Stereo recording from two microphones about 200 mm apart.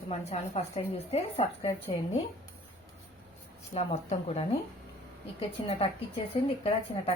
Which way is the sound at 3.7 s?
30° left (ahead or behind).